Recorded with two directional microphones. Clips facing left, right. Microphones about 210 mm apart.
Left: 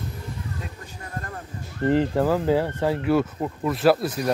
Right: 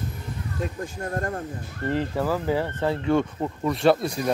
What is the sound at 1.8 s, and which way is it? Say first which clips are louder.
Speech: left 5 dB; 15° left (ahead or behind).